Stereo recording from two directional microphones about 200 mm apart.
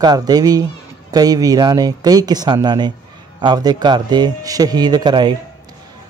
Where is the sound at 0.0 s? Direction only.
20° right (ahead or behind).